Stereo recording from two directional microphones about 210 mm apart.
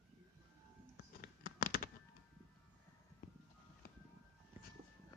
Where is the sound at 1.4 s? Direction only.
45° left (ahead or behind).